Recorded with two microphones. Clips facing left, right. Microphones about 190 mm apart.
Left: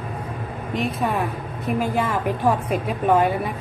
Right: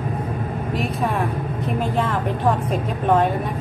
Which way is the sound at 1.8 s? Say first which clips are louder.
Even; 10° left (ahead or behind).